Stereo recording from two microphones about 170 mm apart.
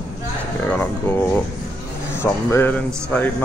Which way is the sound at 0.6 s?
10° left (ahead or behind).